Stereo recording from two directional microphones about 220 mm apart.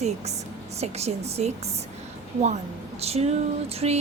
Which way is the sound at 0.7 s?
30° right (ahead or behind).